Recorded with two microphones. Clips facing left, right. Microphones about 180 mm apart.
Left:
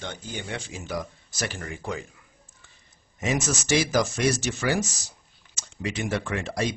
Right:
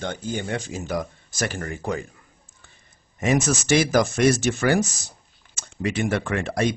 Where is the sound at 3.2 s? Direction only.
55° right (ahead or behind).